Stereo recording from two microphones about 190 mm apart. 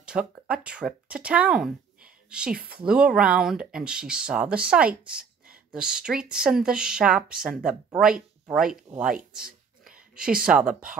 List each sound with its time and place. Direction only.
0.0 s speech: 5° right (ahead or behind)